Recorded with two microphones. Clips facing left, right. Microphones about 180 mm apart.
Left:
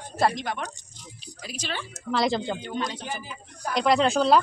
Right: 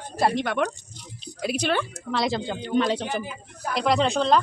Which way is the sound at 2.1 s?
Centre (ahead or behind).